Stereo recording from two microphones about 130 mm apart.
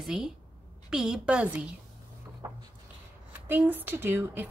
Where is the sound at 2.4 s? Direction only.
25° right (ahead or behind).